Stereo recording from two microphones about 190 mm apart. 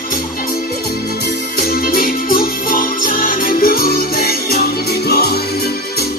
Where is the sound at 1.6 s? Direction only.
50° left (ahead or behind).